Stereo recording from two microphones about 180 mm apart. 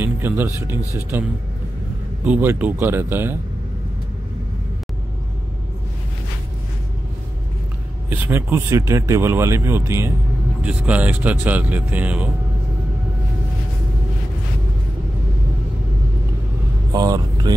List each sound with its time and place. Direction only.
0.0 s speech: 10° right (ahead or behind)
2.2 s speech: 10° right (ahead or behind)
8.1 s speech: 10° right (ahead or behind)
16.9 s speech: 20° right (ahead or behind)